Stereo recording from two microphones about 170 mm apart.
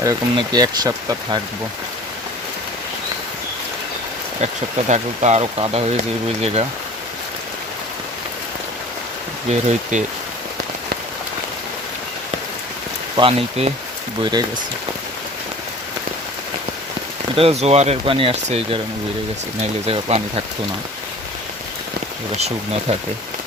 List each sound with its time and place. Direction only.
0.0 s speech: 20° right (ahead or behind)
4.9 s speech: 40° right (ahead or behind)
9.5 s speech: 40° right (ahead or behind)
13.1 s speech: 35° right (ahead or behind)
17.3 s speech: 35° right (ahead or behind)
19.9 s speech: 35° right (ahead or behind)
22.9 s speech: 35° right (ahead or behind)